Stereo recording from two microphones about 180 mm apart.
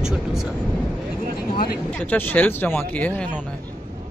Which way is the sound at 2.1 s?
10° left (ahead or behind).